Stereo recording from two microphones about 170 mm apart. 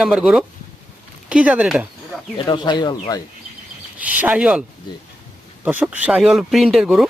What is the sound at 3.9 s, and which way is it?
Speech, 10° right (ahead or behind).